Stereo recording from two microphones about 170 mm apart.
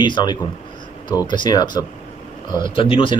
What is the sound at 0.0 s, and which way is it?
Speech, 25° left (ahead or behind).